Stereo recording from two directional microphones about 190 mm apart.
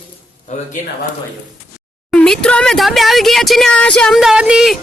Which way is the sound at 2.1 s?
5° left (ahead or behind).